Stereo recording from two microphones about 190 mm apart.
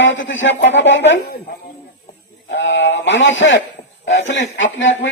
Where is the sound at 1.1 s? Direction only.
55° left (ahead or behind).